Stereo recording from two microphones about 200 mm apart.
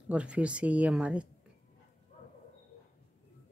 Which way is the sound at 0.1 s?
5° right (ahead or behind).